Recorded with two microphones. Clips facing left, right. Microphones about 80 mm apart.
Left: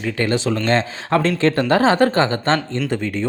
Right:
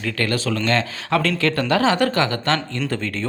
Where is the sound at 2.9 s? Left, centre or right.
Centre.